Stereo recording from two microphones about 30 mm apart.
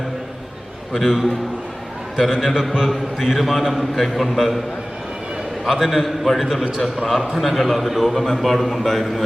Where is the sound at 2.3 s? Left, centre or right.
Centre.